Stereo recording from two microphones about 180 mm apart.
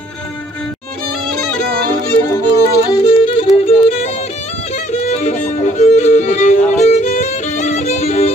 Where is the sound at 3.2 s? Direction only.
35° left (ahead or behind).